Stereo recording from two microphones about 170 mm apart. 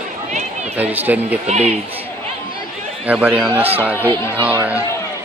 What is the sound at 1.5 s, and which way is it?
Speech, 40° right (ahead or behind).